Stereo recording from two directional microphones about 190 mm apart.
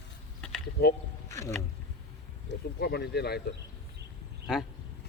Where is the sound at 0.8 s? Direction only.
55° left (ahead or behind).